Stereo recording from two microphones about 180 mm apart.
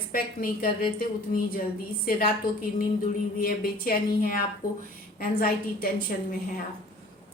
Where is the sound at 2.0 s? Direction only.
55° left (ahead or behind).